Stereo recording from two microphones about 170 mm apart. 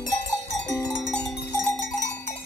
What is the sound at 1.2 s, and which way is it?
Cowbell, 20° left (ahead or behind).